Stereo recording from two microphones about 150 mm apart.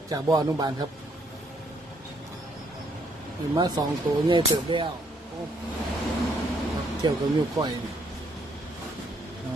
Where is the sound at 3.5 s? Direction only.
25° right (ahead or behind).